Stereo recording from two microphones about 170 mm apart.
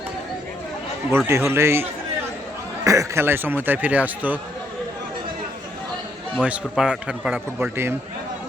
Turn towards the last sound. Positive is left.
turn(degrees=-5)  # may be behind; listen again after turning